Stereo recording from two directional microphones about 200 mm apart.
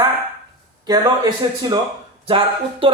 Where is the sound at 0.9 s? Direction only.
20° right (ahead or behind).